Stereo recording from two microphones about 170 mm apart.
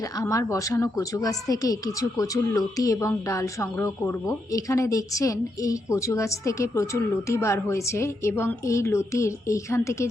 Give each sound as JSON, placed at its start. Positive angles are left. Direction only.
{"t": 0.0, "sound": "a woman's voice", "side_deg": 20}